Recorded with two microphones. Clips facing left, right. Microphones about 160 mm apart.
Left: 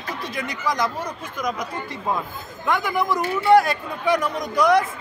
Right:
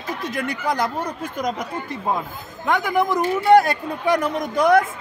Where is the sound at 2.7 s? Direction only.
45° right (ahead or behind).